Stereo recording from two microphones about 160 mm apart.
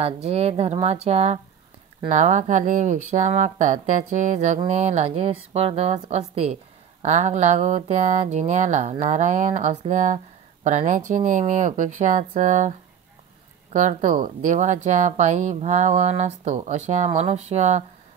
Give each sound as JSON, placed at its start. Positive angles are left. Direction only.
{"t": 0.0, "sound": "a woman's voice", "side_deg": -40}
{"t": 13.7, "sound": "a woman's voice", "side_deg": -50}